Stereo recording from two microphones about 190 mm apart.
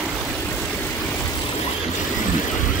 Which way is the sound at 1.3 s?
25° left (ahead or behind).